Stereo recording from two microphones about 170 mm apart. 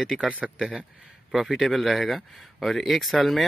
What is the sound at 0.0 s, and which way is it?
Speech, centre (ahead or behind).